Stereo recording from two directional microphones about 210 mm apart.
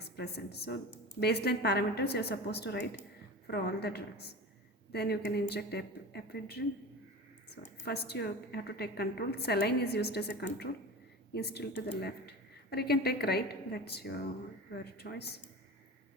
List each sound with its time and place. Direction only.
0.0 s a woman's voice: 50° left (ahead or behind)